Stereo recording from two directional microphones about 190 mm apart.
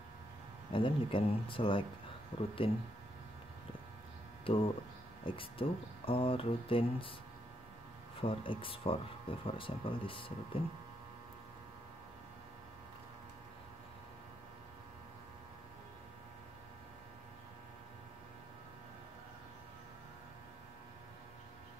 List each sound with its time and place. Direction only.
0.7 s speech: 25° left (ahead or behind)
4.5 s speech: 30° left (ahead or behind)
8.2 s speech: 30° left (ahead or behind)